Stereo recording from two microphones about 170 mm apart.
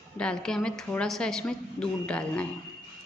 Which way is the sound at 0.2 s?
5° left (ahead or behind).